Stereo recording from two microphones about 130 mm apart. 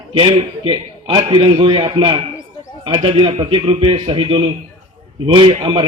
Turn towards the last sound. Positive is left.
turn(degrees=-45)  # may be behind; listen again after turning